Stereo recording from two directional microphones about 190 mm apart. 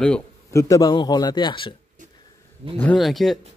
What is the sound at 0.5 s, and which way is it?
A man's voice, 15° left (ahead or behind).